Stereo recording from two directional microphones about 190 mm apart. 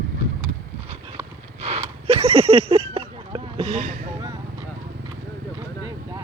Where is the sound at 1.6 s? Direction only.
30° right (ahead or behind).